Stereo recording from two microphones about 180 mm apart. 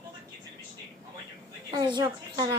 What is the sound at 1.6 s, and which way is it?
Speech, 25° right (ahead or behind).